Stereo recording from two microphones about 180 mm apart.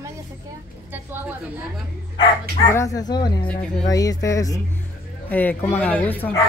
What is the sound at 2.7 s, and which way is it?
Speech, 20° left (ahead or behind).